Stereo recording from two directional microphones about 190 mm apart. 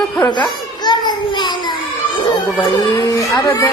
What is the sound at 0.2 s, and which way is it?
Children playing, 25° left (ahead or behind).